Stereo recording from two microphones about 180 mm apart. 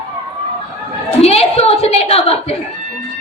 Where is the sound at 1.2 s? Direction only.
35° left (ahead or behind).